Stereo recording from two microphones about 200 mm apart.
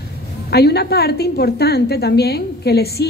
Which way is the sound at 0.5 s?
55° left (ahead or behind).